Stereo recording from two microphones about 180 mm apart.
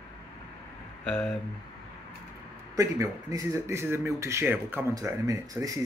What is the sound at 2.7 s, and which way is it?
Speech, 15° right (ahead or behind).